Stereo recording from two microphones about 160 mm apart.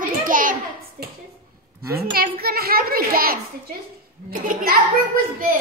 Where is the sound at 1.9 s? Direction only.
75° right (ahead or behind).